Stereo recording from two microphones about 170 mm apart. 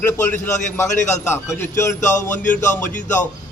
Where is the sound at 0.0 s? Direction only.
15° left (ahead or behind).